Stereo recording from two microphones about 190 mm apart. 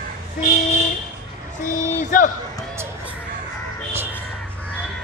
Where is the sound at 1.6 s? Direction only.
40° left (ahead or behind).